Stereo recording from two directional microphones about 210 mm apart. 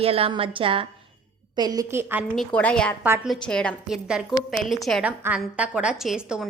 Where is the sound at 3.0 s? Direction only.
5° right (ahead or behind).